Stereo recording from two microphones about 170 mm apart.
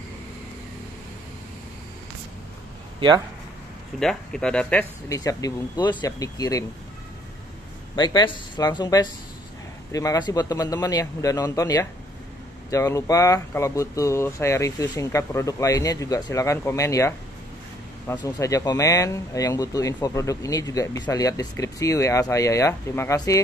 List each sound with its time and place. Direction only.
4.0 s speech: 5° left (ahead or behind)
5.1 s speech: 20° left (ahead or behind)
7.9 s speech: 25° left (ahead or behind)
18.1 s speech: 20° left (ahead or behind)